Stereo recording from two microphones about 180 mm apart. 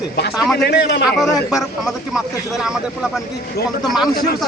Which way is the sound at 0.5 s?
70° left (ahead or behind).